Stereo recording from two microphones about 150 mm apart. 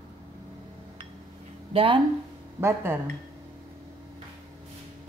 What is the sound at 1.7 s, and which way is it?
Speech, 35° right (ahead or behind).